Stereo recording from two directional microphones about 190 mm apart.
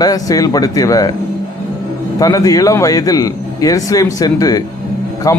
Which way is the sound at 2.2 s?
20° left (ahead or behind).